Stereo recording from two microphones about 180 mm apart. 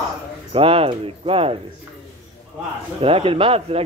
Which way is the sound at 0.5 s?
30° right (ahead or behind).